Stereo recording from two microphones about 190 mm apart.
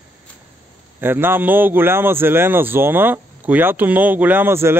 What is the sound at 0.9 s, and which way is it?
Speech, 10° right (ahead or behind).